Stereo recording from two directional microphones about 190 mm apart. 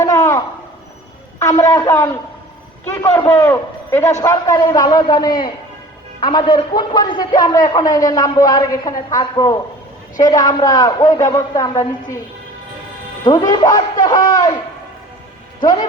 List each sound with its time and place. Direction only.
0.0 s a sound: 20° left (ahead or behind)
1.4 s a man's voice: 15° left (ahead or behind)
13.2 s a man's voice: 20° left (ahead or behind)